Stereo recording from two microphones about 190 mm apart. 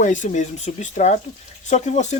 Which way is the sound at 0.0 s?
40° left (ahead or behind).